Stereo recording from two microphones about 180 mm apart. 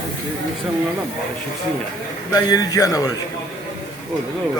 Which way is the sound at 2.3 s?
20° left (ahead or behind).